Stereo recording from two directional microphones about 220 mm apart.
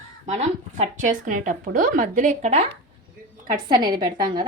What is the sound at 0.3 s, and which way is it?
A woman's voice, 30° right (ahead or behind).